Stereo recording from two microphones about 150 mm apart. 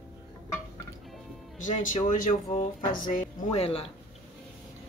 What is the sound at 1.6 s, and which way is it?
Speech, 60° left (ahead or behind).